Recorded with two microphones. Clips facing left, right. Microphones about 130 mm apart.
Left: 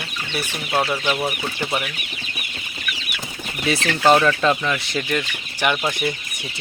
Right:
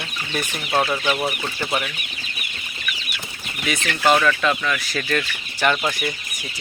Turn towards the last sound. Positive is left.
turn(degrees=10)  # may be behind; listen again after turning